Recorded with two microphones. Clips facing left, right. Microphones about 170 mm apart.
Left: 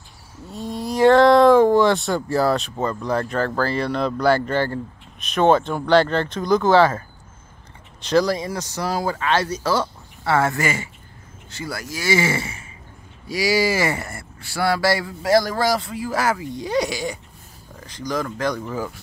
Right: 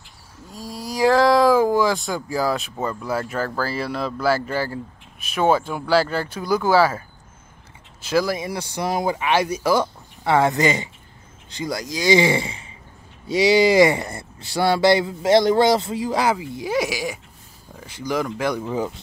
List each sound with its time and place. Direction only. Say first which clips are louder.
0.7 s a sound: left 4 dB; centre (ahead or behind)
2.3 s speech: left 3 dB; centre (ahead or behind)
16.5 s speech: even; 5° right (ahead or behind); by 18.9 s 20° right (ahead or behind)